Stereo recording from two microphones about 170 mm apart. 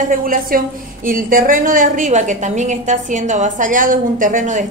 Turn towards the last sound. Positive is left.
turn(degrees=-45)  # may be behind; listen again after turning